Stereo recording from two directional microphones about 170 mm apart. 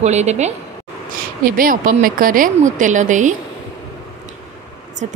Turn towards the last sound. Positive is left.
turn(degrees=-45)  # may be behind; listen again after turning